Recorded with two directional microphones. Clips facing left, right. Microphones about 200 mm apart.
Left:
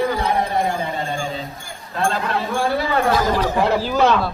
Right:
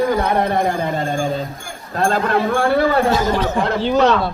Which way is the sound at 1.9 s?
45° right (ahead or behind).